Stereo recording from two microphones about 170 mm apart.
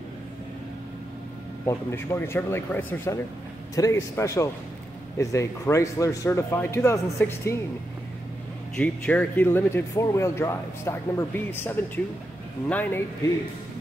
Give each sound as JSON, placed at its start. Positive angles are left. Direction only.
{"t": 1.7, "sound": "speech", "side_deg": 15}
{"t": 8.7, "sound": "speech", "side_deg": 10}